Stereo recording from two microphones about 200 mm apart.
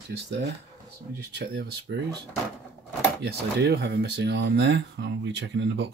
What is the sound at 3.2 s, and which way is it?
Speech, 55° right (ahead or behind).